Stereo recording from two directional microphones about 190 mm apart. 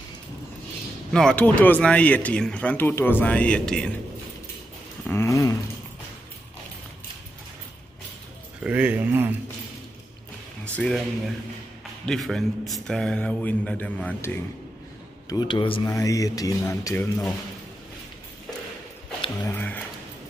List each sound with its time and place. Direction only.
1.1 s speech: 5° left (ahead or behind)
5.0 s a sound: 15° left (ahead or behind)
8.6 s speech: 10° right (ahead or behind)
10.6 s speech: 5° left (ahead or behind)
12.1 s speech: centre (ahead or behind)
15.2 s speech: 25° left (ahead or behind)
19.4 s speech: 10° left (ahead or behind)